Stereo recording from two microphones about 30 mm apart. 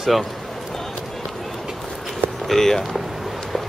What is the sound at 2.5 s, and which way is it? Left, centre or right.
Speech, centre.